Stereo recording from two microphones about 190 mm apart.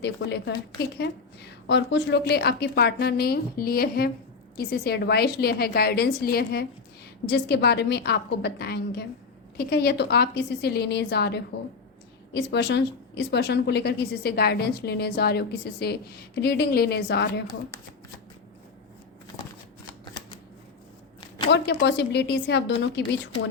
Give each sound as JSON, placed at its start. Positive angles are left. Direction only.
{"t": 0.0, "sound": "a woman's voice", "side_deg": 65}
{"t": 1.6, "sound": "a woman's voice", "side_deg": 70}
{"t": 21.2, "sound": "a sound", "side_deg": 25}
{"t": 21.5, "sound": "a woman's voice", "side_deg": 65}